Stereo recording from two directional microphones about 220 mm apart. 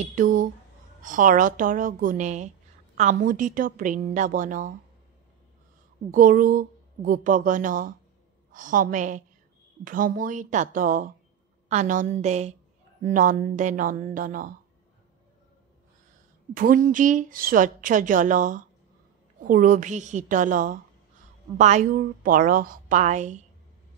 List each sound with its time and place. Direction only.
0.1 s a sound: 35° right (ahead or behind)
1.0 s a woman's voice: 35° right (ahead or behind)
6.1 s a woman's voice: 40° right (ahead or behind)
16.5 s a woman's voice: 40° right (ahead or behind)